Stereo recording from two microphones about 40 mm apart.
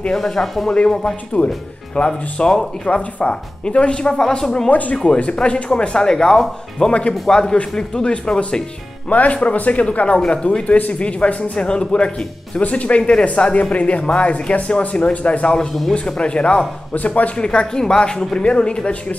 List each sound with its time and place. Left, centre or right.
0.1 s speech: centre
0.7 s speech: left
2.8 s speech: left; by 4.6 s centre
4.6 s speech: left
4.9 s speech: left
6.9 s speech: left
7.2 s speech: centre
9.1 s speech: left
16.9 s speech: left
17.4 s speech: left